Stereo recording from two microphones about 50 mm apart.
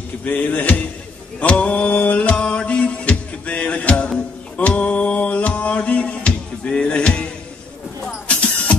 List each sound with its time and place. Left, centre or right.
0.2 s speech: left
1.5 s mantra: left
8.0 s vehicle: left